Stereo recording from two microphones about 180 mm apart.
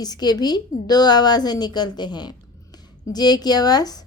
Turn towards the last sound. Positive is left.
turn(degrees=20)  # may be behind; listen again after turning